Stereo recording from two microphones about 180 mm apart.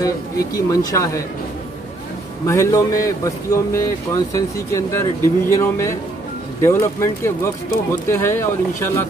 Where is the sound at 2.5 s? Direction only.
15° left (ahead or behind).